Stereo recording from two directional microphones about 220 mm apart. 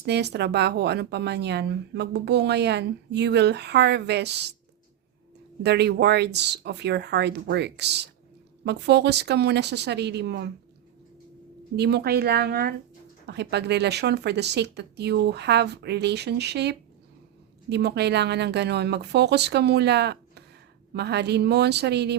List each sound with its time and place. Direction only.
0.0 s speech: 50° right (ahead or behind)
5.6 s speech: 50° right (ahead or behind)
11.8 s speech: 50° right (ahead or behind)